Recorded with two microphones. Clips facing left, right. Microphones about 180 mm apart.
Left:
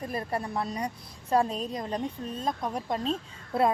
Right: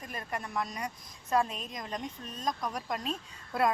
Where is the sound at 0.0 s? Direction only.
35° left (ahead or behind).